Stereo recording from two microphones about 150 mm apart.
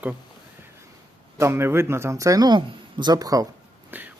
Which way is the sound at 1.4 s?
15° right (ahead or behind).